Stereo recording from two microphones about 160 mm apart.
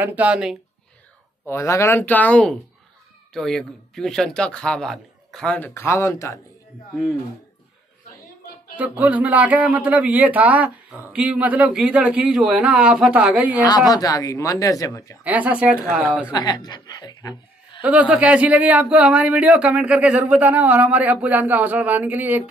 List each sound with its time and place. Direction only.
0.0 s a man's voice: 10° right (ahead or behind)
1.4 s speech: 15° left (ahead or behind)
8.7 s a man's voice: 10° right (ahead or behind)
13.6 s a woman's voice: 25° left (ahead or behind)
15.2 s a man's voice: 10° right (ahead or behind)
16.3 s a woman's voice: 25° left (ahead or behind)
17.8 s a man's voice: 10° right (ahead or behind)